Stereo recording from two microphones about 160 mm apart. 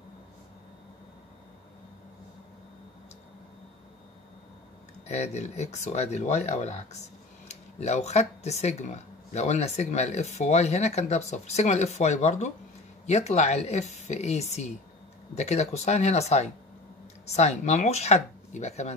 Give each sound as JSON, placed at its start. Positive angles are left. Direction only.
{"t": 5.0, "sound": "speech", "side_deg": 45}